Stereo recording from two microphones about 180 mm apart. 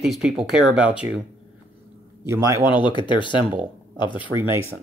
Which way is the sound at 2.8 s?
25° left (ahead or behind).